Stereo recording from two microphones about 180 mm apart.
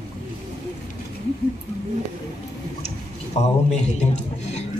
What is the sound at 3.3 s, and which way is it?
A man's voice, 40° left (ahead or behind).